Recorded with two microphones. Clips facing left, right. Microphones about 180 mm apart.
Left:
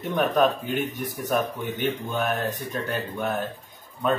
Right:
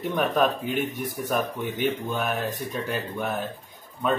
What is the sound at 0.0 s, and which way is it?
Speech, centre (ahead or behind).